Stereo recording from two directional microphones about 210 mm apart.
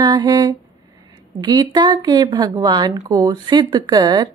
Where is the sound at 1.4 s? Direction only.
20° right (ahead or behind).